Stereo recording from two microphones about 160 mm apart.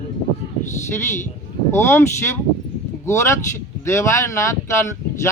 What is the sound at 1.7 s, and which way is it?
Speech, 15° left (ahead or behind).